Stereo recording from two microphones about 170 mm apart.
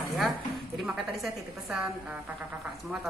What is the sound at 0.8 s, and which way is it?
A woman's voice, 5° right (ahead or behind).